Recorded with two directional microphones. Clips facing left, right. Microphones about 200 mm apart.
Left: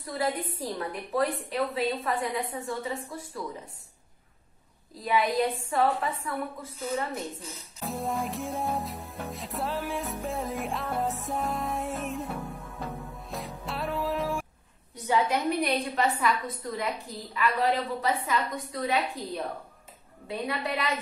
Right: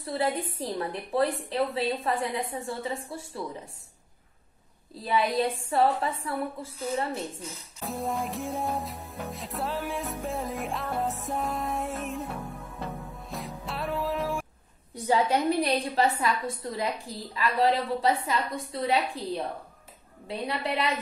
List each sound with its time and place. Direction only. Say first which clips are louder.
0.0 s a woman's voice: right 2 dB; 30° right (ahead or behind)
5.0 s a woman's voice: even; 30° right (ahead or behind)
7.8 s music: even; centre (ahead or behind)
15.0 s a woman's voice: right 2 dB; 35° right (ahead or behind)
20.2 s a woman's voice: right 1 dB; 30° right (ahead or behind)